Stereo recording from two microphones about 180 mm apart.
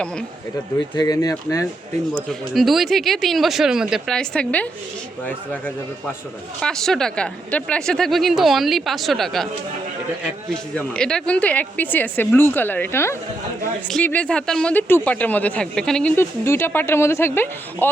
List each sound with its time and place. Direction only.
0.9 s speech: 20° left (ahead or behind)
2.1 s speech: centre (ahead or behind)
6.6 s speech: 5° left (ahead or behind)
10.8 s speech: 5° left (ahead or behind)